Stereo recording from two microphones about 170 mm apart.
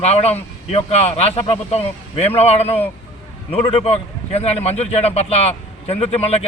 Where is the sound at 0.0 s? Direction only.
40° left (ahead or behind).